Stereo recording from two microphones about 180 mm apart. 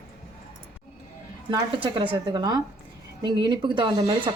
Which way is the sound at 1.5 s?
30° right (ahead or behind).